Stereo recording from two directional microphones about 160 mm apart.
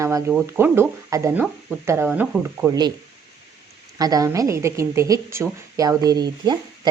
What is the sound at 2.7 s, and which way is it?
Speech, 25° right (ahead or behind).